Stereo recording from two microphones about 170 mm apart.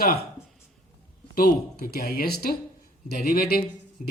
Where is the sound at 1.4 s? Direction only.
60° left (ahead or behind).